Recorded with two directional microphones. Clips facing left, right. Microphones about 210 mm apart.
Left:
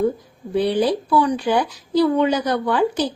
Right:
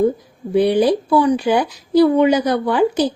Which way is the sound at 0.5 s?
15° right (ahead or behind).